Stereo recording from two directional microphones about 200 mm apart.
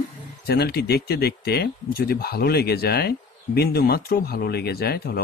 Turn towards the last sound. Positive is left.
turn(degrees=50)  # may be behind; listen again after turning